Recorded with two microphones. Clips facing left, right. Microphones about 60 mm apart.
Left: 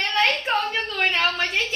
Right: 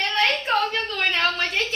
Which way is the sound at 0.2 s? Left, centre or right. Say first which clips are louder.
Even; centre.